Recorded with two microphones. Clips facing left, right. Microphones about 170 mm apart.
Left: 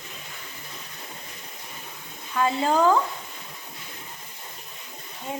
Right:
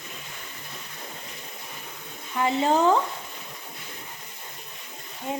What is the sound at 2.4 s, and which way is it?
Speech, 25° right (ahead or behind).